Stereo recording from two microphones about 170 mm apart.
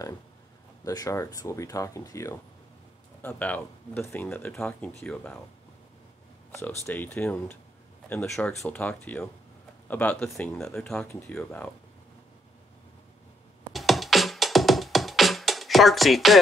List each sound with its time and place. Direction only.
0.8 s speech: 20° left (ahead or behind)
6.5 s speech: 15° left (ahead or behind)
13.7 s music: centre (ahead or behind)